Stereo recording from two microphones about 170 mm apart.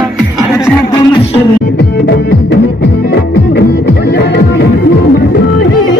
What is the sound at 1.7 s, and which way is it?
Music, 75° left (ahead or behind).